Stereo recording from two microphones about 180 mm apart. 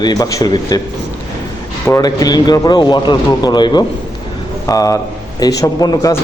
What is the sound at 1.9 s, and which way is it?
A man's voice, 20° left (ahead or behind).